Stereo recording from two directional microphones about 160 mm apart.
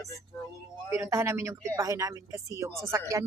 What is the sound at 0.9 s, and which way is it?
A woman's voice, 20° right (ahead or behind).